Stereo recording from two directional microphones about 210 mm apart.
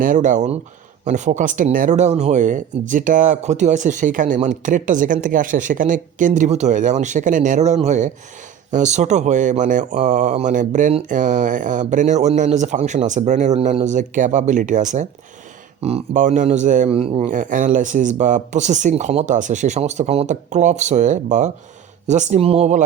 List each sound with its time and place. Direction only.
0.0 s speech: 35° right (ahead or behind)